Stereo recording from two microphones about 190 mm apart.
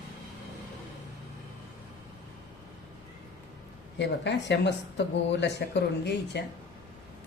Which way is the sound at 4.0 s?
65° left (ahead or behind).